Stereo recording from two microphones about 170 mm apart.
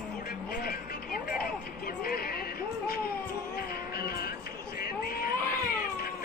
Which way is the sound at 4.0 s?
65° left (ahead or behind).